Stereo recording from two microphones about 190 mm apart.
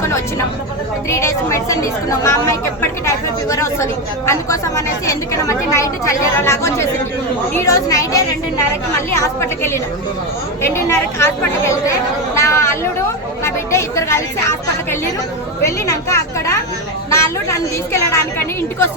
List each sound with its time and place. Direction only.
1.1 s speech: 15° left (ahead or behind)
9.2 s speech: 15° left (ahead or behind)